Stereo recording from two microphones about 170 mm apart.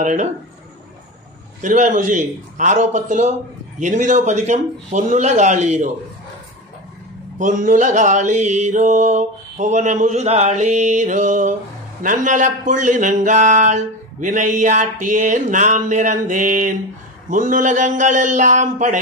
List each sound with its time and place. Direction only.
0.0 s speech: 50° right (ahead or behind)
1.6 s speech: 45° right (ahead or behind)
7.3 s speech: 50° right (ahead or behind)